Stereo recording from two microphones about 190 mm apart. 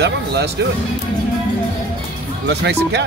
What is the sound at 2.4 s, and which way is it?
Speech, 65° right (ahead or behind).